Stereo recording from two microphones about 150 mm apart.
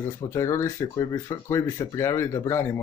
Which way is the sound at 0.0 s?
20° left (ahead or behind).